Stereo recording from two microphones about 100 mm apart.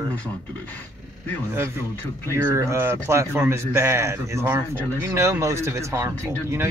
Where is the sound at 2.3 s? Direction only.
30° right (ahead or behind).